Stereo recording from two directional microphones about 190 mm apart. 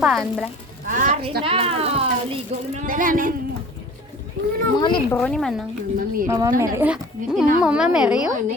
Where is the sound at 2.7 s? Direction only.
40° right (ahead or behind).